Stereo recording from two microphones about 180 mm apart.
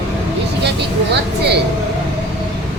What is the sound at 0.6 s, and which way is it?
Vehicle, 70° right (ahead or behind).